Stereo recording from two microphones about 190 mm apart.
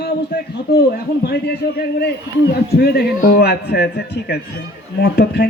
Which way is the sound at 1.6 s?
55° left (ahead or behind).